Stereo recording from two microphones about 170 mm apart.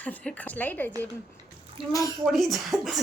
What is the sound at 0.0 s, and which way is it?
Speech, 10° left (ahead or behind).